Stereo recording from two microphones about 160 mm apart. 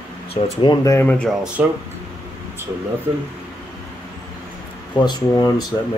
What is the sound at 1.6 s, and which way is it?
Speech, 10° right (ahead or behind).